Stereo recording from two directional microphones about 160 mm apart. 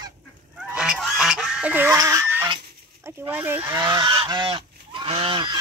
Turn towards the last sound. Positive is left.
turn(degrees=-30)  # may be behind; listen again after turning